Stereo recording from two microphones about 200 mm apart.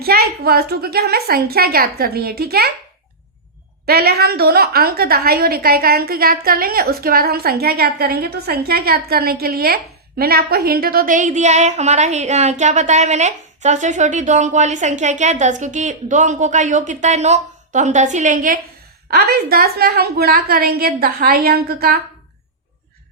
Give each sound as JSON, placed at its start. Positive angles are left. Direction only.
{"t": 0.0, "sound": "a woman's voice", "side_deg": -50}
{"t": 3.8, "sound": "a woman's voice", "side_deg": -50}